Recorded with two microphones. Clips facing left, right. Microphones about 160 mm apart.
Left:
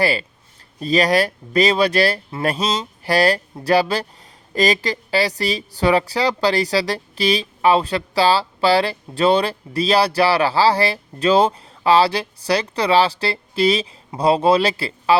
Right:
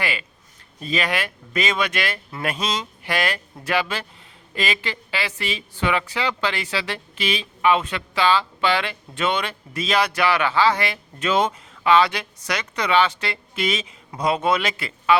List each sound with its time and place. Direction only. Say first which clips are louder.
0.0 s speech: left 8 dB; 35° left (ahead or behind)